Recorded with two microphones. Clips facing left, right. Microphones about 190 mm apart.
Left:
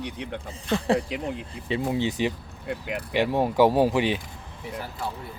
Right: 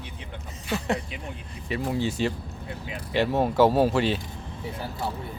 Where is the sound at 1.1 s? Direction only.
90° left.